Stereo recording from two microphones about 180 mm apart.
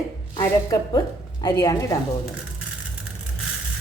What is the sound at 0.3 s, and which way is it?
A woman's voice, 20° left (ahead or behind).